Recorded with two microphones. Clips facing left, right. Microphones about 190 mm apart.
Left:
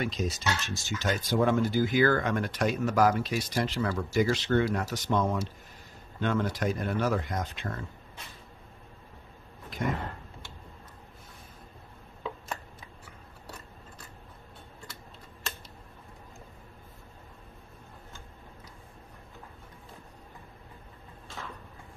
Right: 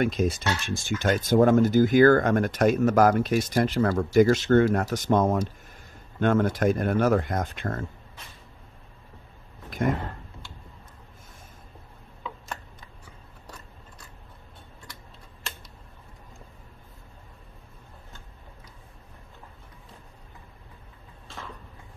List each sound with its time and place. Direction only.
0.0 s speech: 55° right (ahead or behind)